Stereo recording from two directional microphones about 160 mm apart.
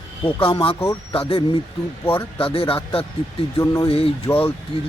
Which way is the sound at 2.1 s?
35° left (ahead or behind).